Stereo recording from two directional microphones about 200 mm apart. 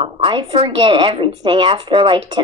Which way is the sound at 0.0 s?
25° right (ahead or behind).